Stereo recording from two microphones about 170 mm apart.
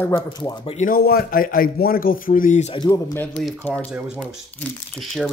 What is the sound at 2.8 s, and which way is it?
Speech, 20° left (ahead or behind).